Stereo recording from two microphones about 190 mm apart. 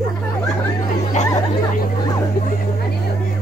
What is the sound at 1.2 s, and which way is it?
Music, 40° left (ahead or behind).